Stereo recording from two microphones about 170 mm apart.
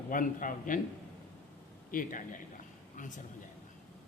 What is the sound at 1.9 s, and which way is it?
Speech, 50° left (ahead or behind).